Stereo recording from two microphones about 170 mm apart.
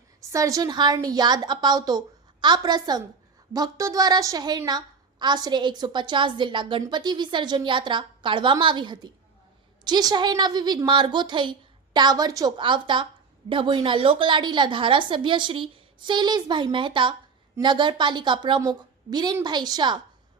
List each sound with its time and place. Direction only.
0.2 s a woman's voice: 20° right (ahead or behind)